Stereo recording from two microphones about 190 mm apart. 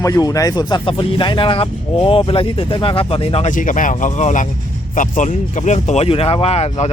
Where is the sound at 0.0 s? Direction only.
20° left (ahead or behind).